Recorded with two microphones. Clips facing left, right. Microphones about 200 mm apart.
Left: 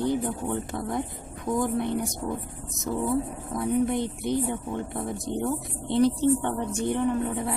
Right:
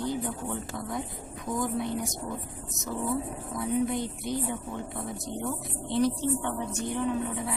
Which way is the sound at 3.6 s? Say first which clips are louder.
Left 3 dB; 55° left (ahead or behind).